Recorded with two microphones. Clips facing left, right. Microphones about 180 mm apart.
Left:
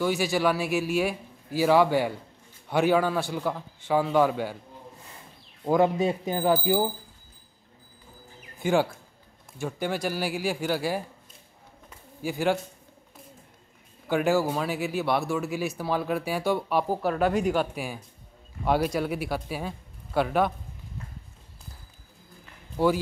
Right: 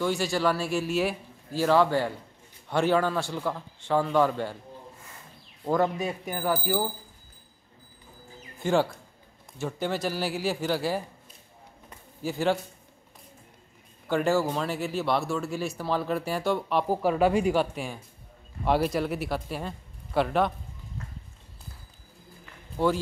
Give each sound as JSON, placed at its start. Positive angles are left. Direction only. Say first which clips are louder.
{"t": 0.0, "sound": "a man's voice", "louder": "left 1 dB", "side_deg": 5}
{"t": 5.9, "sound": "speech", "louder": "left 6 dB", "side_deg": 25}
{"t": 8.5, "sound": "speech", "louder": "left 1 dB", "side_deg": 0}
{"t": 12.2, "sound": "speech", "louder": "even", "side_deg": 0}
{"t": 14.0, "sound": "a man's voice", "louder": "left 1 dB", "side_deg": 0}
{"t": 15.6, "sound": "speech", "louder": "left 1 dB", "side_deg": 5}
{"t": 16.9, "sound": "speech", "louder": "right 4 dB", "side_deg": -5}